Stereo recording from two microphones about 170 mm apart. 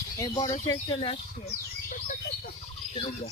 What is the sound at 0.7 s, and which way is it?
Speech, 30° left (ahead or behind).